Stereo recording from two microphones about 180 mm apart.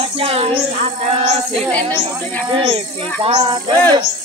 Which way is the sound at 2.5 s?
30° right (ahead or behind).